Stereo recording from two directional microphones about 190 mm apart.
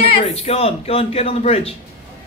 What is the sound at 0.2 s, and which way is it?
Speech, 30° left (ahead or behind).